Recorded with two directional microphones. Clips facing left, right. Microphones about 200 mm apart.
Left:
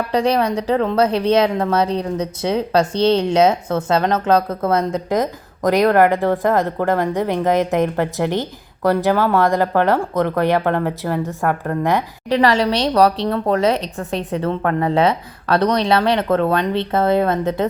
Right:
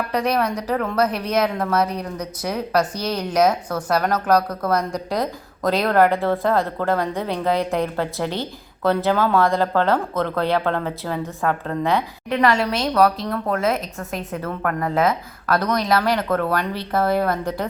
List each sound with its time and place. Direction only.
0.1 s a woman's voice: 30° left (ahead or behind); by 11.2 s 15° left (ahead or behind)
12.3 s a woman's voice: 35° left (ahead or behind)